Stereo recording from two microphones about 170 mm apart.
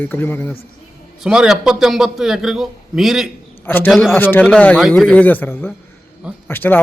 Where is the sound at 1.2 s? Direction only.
5° right (ahead or behind).